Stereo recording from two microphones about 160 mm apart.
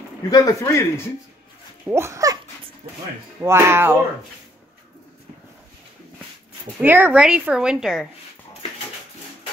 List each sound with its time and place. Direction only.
0.3 s speech: 20° left (ahead or behind)
1.9 s speech: 15° right (ahead or behind)
3.3 s speech: 15° right (ahead or behind)
6.8 s a woman's voice: 10° right (ahead or behind)